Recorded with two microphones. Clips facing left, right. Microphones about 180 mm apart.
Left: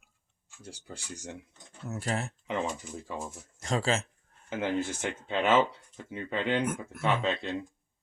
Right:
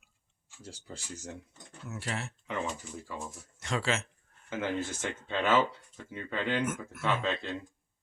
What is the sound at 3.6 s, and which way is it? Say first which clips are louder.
Speech: left 3 dB; 40° left (ahead or behind).